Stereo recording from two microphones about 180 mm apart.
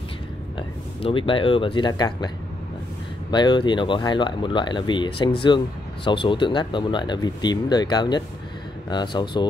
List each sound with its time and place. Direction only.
0.6 s speech: 30° left (ahead or behind)